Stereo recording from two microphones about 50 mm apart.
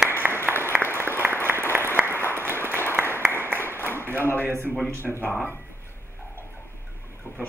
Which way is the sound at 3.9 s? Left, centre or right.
Right.